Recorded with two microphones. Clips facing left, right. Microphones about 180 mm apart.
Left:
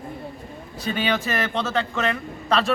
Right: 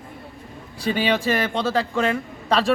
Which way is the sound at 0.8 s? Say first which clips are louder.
Right 3 dB; 30° right (ahead or behind).